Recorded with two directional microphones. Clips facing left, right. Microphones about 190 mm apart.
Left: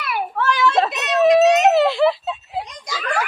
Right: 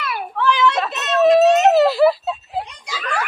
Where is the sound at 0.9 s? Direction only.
15° left (ahead or behind).